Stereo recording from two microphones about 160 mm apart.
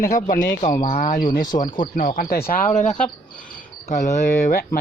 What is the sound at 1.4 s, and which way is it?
Speech, 25° left (ahead or behind).